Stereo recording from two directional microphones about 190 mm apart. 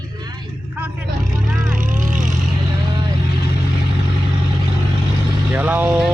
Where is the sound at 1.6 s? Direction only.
45° right (ahead or behind).